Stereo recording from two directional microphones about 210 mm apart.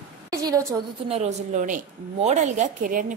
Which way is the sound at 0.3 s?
15° right (ahead or behind).